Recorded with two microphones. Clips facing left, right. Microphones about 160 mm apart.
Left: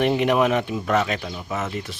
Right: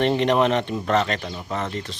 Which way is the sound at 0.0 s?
10° left (ahead or behind).